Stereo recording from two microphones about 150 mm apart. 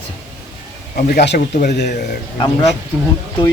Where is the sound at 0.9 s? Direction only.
85° left.